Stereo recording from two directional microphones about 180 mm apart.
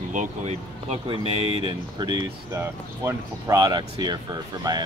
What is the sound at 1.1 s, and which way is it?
Speech, 30° right (ahead or behind).